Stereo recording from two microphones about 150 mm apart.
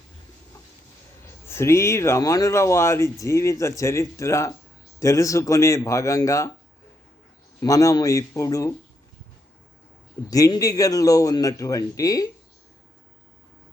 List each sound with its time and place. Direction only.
1.5 s speech: 15° left (ahead or behind)
7.6 s speech: 20° left (ahead or behind)
10.2 s speech: 25° left (ahead or behind)